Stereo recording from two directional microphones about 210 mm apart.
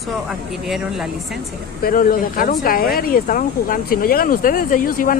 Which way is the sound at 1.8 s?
45° left (ahead or behind).